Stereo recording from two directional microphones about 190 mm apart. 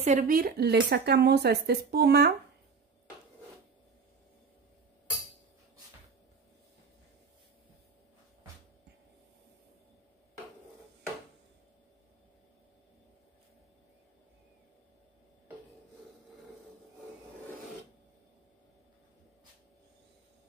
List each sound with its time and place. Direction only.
0.0 s speech: 40° right (ahead or behind); by 2.3 s 55° right (ahead or behind)